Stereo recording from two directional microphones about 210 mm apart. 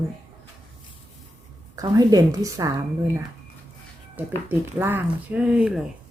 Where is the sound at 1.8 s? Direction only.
15° right (ahead or behind).